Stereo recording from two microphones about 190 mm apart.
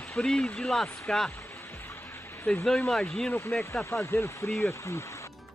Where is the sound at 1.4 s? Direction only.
10° left (ahead or behind).